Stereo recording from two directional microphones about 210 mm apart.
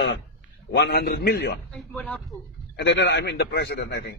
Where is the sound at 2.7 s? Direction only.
55° left (ahead or behind).